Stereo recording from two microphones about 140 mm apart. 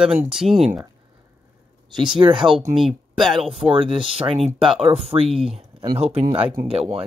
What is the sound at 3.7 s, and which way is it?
Speech, 40° right (ahead or behind).